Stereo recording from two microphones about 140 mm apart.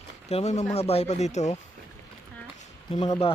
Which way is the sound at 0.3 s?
50° left (ahead or behind).